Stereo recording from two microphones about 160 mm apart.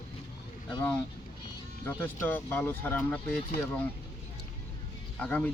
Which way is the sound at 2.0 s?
10° left (ahead or behind).